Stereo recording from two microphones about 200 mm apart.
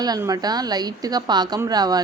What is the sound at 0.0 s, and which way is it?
A woman's voice, 20° right (ahead or behind).